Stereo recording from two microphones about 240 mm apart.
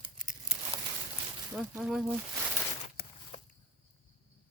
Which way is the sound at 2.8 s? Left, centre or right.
Left.